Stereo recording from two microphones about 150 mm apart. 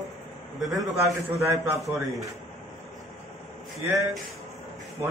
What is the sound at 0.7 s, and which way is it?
A man's voice, 20° right (ahead or behind).